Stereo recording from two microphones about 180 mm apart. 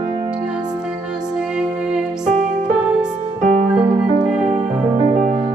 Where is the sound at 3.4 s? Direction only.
40° right (ahead or behind).